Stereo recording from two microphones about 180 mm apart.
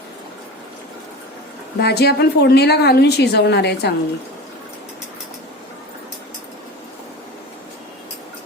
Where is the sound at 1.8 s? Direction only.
65° left (ahead or behind).